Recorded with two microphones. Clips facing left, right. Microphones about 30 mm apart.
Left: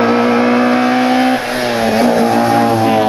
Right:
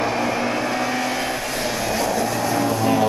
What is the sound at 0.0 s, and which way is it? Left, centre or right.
Vehicle, left.